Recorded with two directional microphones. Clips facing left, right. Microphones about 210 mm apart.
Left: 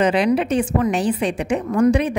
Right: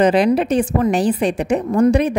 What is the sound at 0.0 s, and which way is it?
A woman's voice, 40° right (ahead or behind).